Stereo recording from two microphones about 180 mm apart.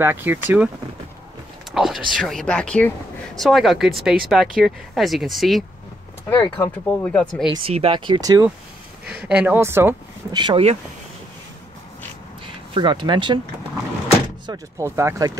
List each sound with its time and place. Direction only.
0.0 s speech: 10° right (ahead or behind)
1.7 s speech: centre (ahead or behind)
6.6 s speech: 10° left (ahead or behind)
7.5 s speech: 30° right (ahead or behind)
9.1 s speech: 5° right (ahead or behind)
10.4 s speech: 35° right (ahead or behind)
12.7 s speech: 25° right (ahead or behind)
14.4 s speech: 20° right (ahead or behind)